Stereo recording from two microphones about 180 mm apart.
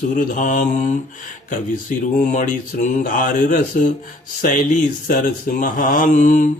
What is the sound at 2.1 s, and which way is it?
Speech, 45° left (ahead or behind).